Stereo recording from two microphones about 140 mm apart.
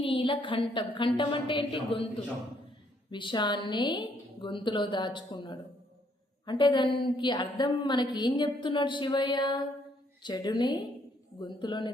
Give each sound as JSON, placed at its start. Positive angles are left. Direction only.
{"t": 0.0, "sound": "a woman's voice", "side_deg": 40}
{"t": 3.1, "sound": "a woman's voice", "side_deg": 35}